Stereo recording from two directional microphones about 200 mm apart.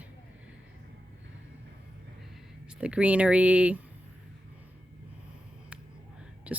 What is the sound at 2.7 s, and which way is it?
Speech, 5° right (ahead or behind).